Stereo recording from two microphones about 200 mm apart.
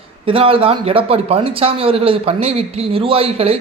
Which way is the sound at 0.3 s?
25° right (ahead or behind).